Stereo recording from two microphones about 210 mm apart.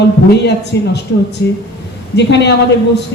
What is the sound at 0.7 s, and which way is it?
Speech, 55° left (ahead or behind).